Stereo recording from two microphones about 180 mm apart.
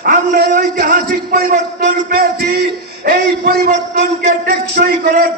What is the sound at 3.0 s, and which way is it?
A man's voice, 60° right (ahead or behind).